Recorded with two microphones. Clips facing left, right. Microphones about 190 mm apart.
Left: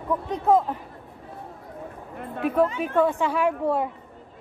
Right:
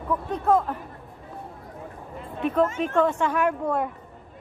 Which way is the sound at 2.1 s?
60° left (ahead or behind).